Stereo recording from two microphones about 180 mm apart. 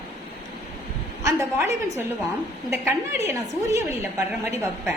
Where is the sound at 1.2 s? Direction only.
15° right (ahead or behind).